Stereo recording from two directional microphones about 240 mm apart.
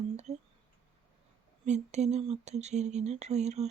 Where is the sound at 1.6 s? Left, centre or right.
Right.